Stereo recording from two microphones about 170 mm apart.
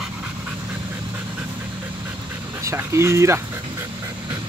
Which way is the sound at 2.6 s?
15° right (ahead or behind).